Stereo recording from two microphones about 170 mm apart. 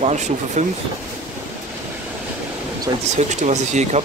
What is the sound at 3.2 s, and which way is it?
Speech, 45° right (ahead or behind).